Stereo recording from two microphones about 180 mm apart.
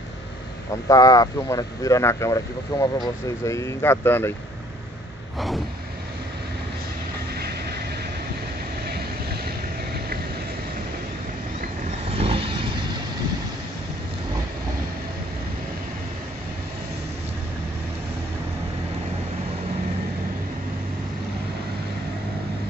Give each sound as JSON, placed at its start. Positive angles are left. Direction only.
{"t": 0.8, "sound": "speech", "side_deg": 20}
{"t": 8.8, "sound": "vehicle", "side_deg": -60}
{"t": 12.2, "sound": "vehicle", "side_deg": -30}